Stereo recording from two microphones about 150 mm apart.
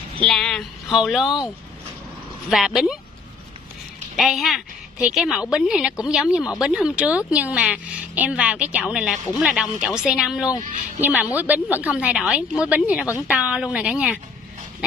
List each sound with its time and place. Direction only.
0.2 s a woman's voice: 5° left (ahead or behind)
2.5 s a woman's voice: centre (ahead or behind)
4.2 s a woman's voice: centre (ahead or behind)